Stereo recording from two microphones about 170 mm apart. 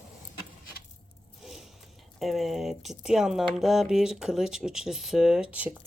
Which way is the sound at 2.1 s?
Centre (ahead or behind).